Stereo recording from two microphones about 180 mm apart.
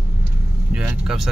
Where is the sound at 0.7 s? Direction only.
5° right (ahead or behind).